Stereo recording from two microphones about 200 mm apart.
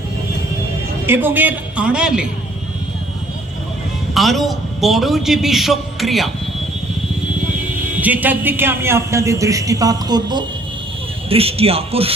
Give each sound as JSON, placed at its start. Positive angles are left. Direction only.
{"t": 1.0, "sound": "a man's voice", "side_deg": -10}
{"t": 4.1, "sound": "a man's voice", "side_deg": 0}
{"t": 7.9, "sound": "a man's voice", "side_deg": -10}